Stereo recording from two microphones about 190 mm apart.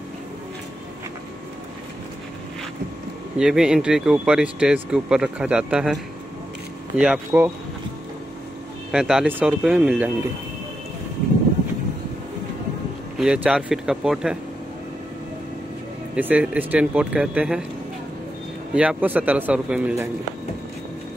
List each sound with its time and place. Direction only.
3.3 s speech: 5° right (ahead or behind)
7.0 s speech: 5° right (ahead or behind)
8.9 s speech: 5° right (ahead or behind)
13.2 s speech: 5° right (ahead or behind)
16.2 s speech: 10° right (ahead or behind)
18.8 s speech: 5° right (ahead or behind)